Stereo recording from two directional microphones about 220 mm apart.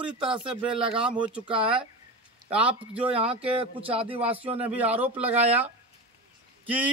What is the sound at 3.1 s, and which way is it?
Speech, 25° right (ahead or behind).